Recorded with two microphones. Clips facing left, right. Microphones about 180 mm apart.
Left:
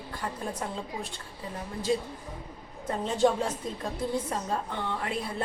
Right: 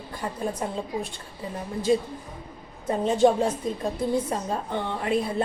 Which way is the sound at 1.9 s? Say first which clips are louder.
Right 6 dB; 20° right (ahead or behind).